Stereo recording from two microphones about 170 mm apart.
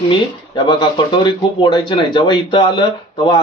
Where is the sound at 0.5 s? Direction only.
25° left (ahead or behind).